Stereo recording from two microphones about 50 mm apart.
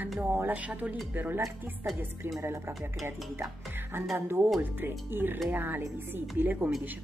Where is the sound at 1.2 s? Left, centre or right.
Right.